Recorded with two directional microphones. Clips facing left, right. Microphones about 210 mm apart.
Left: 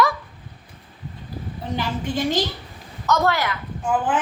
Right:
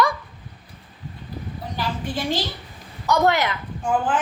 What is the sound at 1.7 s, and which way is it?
Speech, 20° left (ahead or behind).